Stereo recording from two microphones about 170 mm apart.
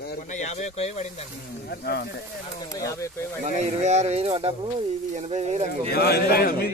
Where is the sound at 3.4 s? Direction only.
40° right (ahead or behind).